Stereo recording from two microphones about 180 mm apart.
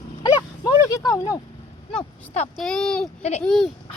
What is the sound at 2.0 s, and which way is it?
Speech, 35° left (ahead or behind).